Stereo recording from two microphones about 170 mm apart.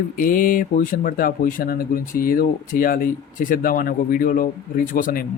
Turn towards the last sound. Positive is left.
turn(degrees=55)  # may be behind; listen again after turning